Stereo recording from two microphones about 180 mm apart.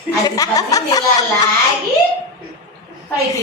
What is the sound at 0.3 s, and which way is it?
Speech, 20° left (ahead or behind).